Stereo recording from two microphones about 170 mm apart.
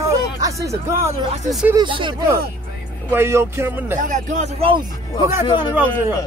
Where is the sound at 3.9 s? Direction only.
45° right (ahead or behind).